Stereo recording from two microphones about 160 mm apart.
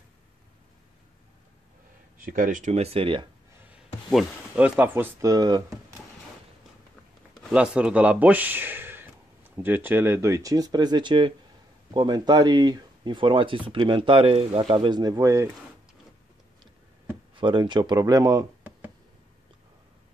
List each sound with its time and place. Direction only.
2.1 s speech: 60° right (ahead or behind); by 3.3 s 35° right (ahead or behind)
4.1 s speech: 5° right (ahead or behind); by 5.8 s 25° right (ahead or behind)
7.5 s speech: 5° right (ahead or behind)
17.4 s speech: 30° right (ahead or behind)